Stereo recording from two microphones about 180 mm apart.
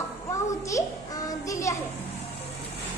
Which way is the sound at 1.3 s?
20° left (ahead or behind).